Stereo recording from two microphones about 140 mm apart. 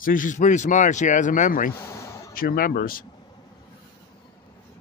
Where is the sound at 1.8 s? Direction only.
20° left (ahead or behind).